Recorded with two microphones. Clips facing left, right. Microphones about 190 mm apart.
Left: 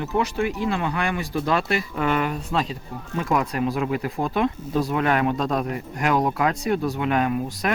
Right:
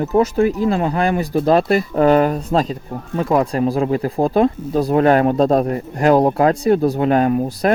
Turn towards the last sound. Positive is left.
turn(degrees=-35)  # may be behind; listen again after turning